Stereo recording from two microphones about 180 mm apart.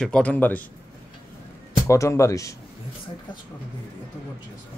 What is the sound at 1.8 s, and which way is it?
Speech, 15° left (ahead or behind).